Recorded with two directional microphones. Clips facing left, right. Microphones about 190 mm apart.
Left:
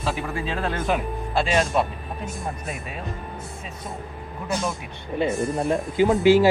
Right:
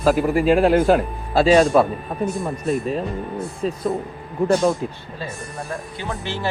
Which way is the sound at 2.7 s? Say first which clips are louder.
Right 13 dB; 35° right (ahead or behind).